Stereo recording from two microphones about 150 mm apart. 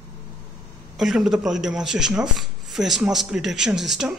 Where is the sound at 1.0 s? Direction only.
Centre (ahead or behind).